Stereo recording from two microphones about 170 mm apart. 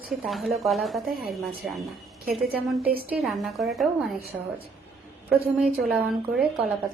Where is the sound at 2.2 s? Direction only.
65° right (ahead or behind).